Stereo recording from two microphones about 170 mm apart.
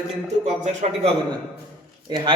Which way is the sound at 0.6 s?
40° right (ahead or behind).